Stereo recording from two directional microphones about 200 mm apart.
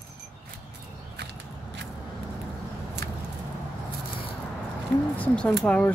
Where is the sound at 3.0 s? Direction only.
50° right (ahead or behind).